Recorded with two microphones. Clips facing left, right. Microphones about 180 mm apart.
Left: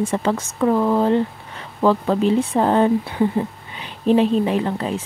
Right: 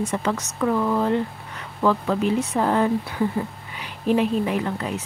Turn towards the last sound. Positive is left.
turn(degrees=30)  # may be behind; listen again after turning